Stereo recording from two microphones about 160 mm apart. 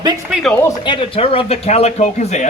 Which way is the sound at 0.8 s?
35° left (ahead or behind).